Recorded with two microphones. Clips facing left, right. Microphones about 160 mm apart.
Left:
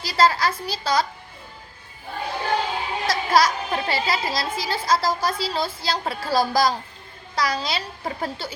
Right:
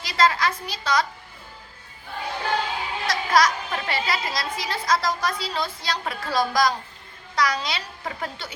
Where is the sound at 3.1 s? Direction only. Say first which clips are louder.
Left 1 dB; 30° left (ahead or behind).